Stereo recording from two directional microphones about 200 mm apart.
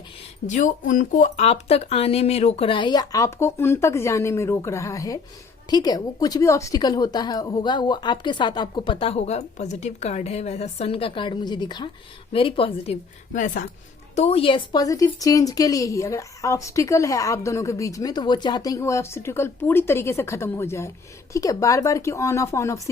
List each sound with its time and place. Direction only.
0.4 s a woman's voice: 40° left (ahead or behind)
14.2 s speech: 30° left (ahead or behind)